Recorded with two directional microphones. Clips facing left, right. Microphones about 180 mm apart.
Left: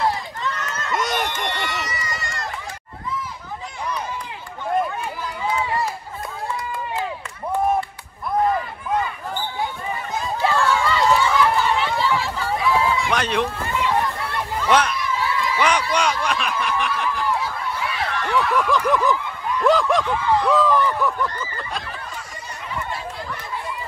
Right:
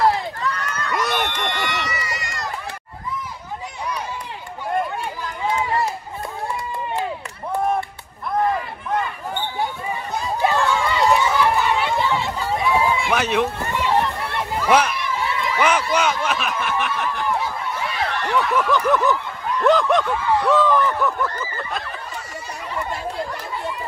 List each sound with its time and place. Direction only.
0.5 s a sound: 25° left (ahead or behind)
0.9 s speech: 5° right (ahead or behind)
10.3 s run: 20° right (ahead or behind)
13.1 s speech: 5° right (ahead or behind)
13.6 s run: 25° right (ahead or behind)
14.6 s a sound: 5° right (ahead or behind)
15.0 s a sound: 25° right (ahead or behind)
15.5 s snicker: 5° right (ahead or behind)
17.4 s snicker: 35° right (ahead or behind)
18.3 s speech: centre (ahead or behind)